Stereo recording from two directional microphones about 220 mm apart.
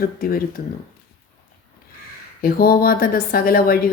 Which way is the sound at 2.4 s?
45° left (ahead or behind).